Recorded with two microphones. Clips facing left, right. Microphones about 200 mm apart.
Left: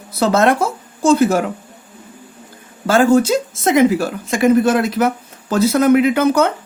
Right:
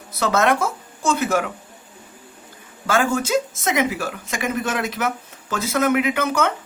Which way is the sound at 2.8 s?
35° left (ahead or behind).